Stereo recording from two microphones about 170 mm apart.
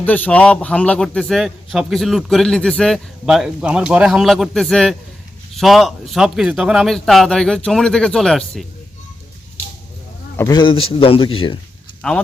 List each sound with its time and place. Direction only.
0.0 s a man's voice: 10° left (ahead or behind)
10.3 s a man's voice: 20° left (ahead or behind)